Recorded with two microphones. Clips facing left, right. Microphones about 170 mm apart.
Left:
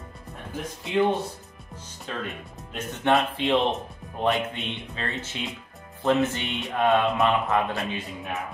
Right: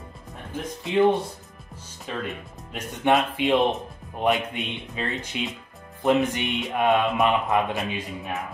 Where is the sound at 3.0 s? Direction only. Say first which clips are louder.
Right 2 dB; 10° right (ahead or behind).